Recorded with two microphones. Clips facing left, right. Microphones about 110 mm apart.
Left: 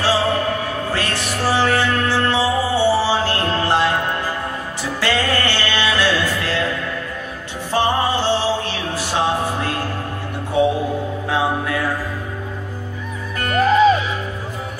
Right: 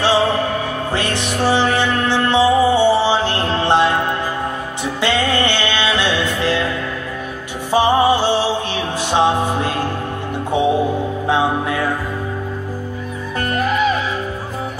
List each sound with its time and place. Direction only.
0.9 s music: 20° right (ahead or behind)
5.0 s music: 20° right (ahead or behind)
7.7 s music: 15° right (ahead or behind)
10.6 s music: 20° right (ahead or behind)
13.6 s music: 35° left (ahead or behind)